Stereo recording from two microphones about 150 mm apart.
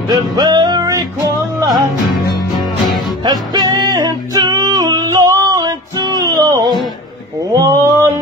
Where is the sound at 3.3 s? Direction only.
25° right (ahead or behind).